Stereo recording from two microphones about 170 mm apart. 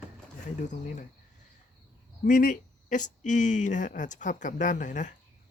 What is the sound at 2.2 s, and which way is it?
Speech, 55° left (ahead or behind).